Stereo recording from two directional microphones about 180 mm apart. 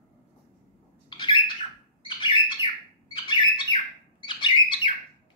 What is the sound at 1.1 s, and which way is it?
Bird, 25° left (ahead or behind).